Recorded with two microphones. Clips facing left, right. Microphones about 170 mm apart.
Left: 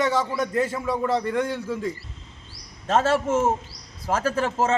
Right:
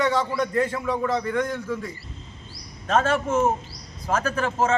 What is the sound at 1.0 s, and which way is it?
Speech, 30° left (ahead or behind).